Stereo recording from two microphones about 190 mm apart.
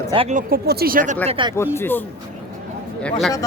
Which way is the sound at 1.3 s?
25° right (ahead or behind).